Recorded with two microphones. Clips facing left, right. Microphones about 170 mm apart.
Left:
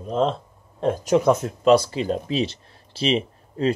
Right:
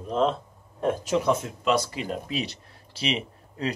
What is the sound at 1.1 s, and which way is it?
Speech, 40° left (ahead or behind).